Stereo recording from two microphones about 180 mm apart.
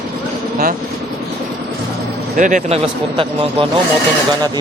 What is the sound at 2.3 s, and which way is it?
Speech, 45° right (ahead or behind).